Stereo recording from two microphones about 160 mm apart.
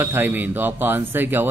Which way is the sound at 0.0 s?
15° right (ahead or behind).